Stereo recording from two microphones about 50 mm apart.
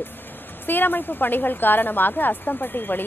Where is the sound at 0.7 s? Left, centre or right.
Left.